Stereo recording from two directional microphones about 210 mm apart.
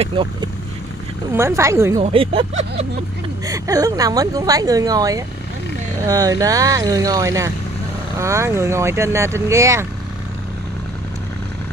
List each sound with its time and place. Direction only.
0.0 s speech: 25° right (ahead or behind)
1.3 s speech: 15° right (ahead or behind)
2.0 s speech: 30° right (ahead or behind)
3.4 s speech: 15° right (ahead or behind)